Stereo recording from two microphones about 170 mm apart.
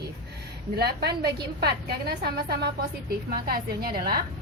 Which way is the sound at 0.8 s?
70° right (ahead or behind).